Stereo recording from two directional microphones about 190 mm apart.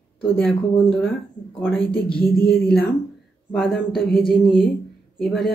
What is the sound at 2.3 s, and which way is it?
Speech, 55° left (ahead or behind).